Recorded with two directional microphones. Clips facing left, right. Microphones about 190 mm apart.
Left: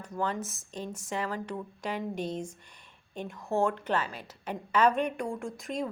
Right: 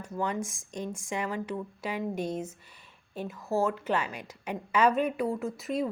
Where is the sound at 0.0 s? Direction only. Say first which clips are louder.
Right 1 dB; 10° right (ahead or behind).